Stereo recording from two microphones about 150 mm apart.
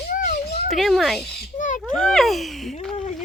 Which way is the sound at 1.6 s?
55° left (ahead or behind).